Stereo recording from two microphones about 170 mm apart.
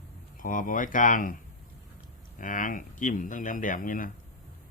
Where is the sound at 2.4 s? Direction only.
50° left (ahead or behind).